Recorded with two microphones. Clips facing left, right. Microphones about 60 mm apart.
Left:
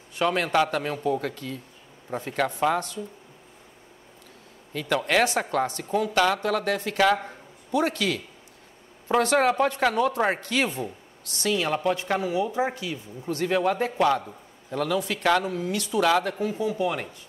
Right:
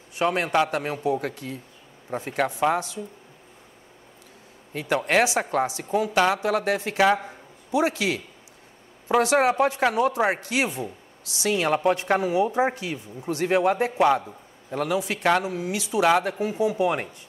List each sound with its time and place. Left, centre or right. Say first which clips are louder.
0.2 s a man's voice: right 1 dB; centre
0.7 s speech: right 1 dB; right
2.0 s a man's voice: right 1 dB; centre
4.8 s speech: right 1 dB; right
5.7 s a man's voice: right 1 dB; centre
11.5 s speech: right 3 dB; right
13.2 s a man's voice: right 2 dB; centre